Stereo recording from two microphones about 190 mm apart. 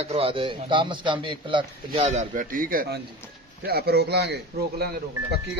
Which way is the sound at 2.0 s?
40° right (ahead or behind).